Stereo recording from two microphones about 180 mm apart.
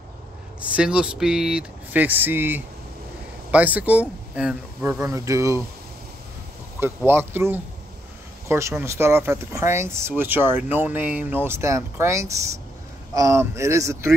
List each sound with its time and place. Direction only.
0.6 s speech: 5° right (ahead or behind)
6.8 s speech: 10° right (ahead or behind)